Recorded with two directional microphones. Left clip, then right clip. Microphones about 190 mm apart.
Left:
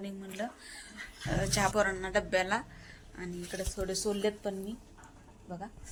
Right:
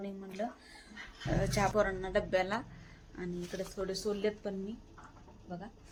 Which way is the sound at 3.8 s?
25° left (ahead or behind).